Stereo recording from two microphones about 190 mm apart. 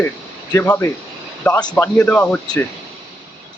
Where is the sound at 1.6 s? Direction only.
20° left (ahead or behind).